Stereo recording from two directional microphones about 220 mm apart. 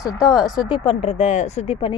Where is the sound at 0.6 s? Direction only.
20° left (ahead or behind).